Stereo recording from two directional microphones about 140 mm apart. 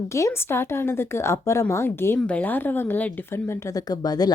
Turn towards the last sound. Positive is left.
turn(degrees=30)  # may be behind; listen again after turning